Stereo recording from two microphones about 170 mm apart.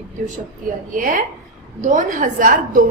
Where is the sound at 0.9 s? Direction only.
50° right (ahead or behind).